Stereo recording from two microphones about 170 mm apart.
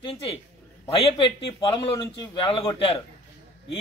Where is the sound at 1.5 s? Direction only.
30° left (ahead or behind).